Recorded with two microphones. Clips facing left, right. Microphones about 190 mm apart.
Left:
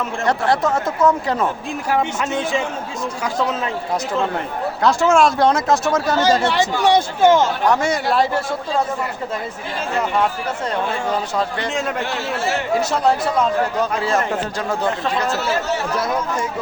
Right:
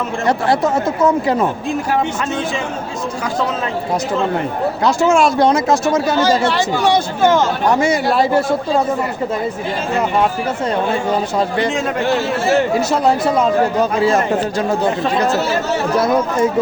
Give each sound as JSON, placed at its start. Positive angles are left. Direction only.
{"t": 0.3, "sound": "speech", "side_deg": -5}
{"t": 4.8, "sound": "speech", "side_deg": 0}
{"t": 6.4, "sound": "speech", "side_deg": 20}
{"t": 7.7, "sound": "speech", "side_deg": 0}
{"t": 11.3, "sound": "speech", "side_deg": -10}
{"t": 14.0, "sound": "speech", "side_deg": -10}